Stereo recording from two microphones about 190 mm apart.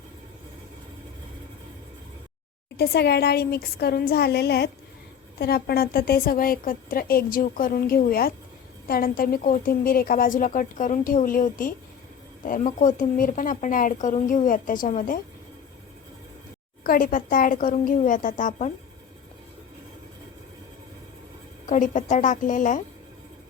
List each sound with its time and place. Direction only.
2.7 s a woman's voice: 55° left (ahead or behind)
16.8 s a woman's voice: 50° left (ahead or behind)
21.7 s a woman's voice: 40° left (ahead or behind)